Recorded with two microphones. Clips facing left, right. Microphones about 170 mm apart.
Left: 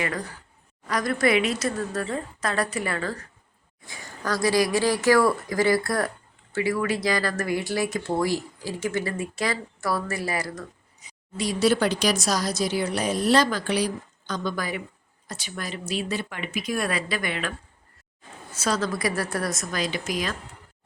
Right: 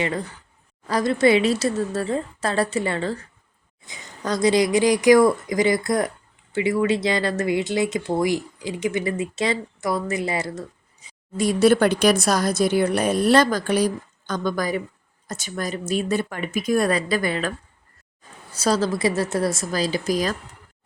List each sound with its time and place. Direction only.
0.9 s speech: 25° right (ahead or behind)
11.3 s speech: 55° right (ahead or behind); by 17.5 s 35° right (ahead or behind)
18.5 s a woman's voice: 35° right (ahead or behind)